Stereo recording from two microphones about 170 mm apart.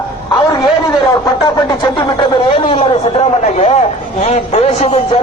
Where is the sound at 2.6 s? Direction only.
35° left (ahead or behind).